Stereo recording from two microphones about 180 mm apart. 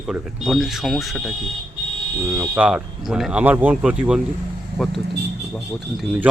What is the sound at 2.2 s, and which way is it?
Speech, 15° right (ahead or behind).